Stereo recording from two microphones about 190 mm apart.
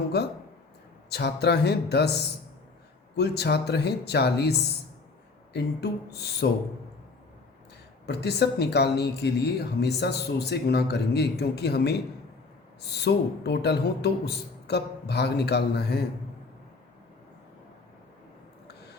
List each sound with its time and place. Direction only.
1.1 s speech: 60° left (ahead or behind)
3.2 s speech: 60° left (ahead or behind)
5.5 s speech: 60° left (ahead or behind)
8.0 s speech: 60° left (ahead or behind)